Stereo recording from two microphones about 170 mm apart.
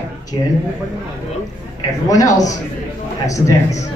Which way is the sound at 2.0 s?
20° left (ahead or behind).